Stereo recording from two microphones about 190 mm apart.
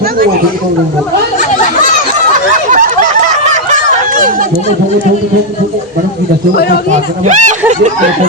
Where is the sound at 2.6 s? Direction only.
45° right (ahead or behind).